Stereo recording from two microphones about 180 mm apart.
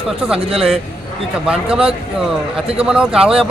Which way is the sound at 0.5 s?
Centre (ahead or behind).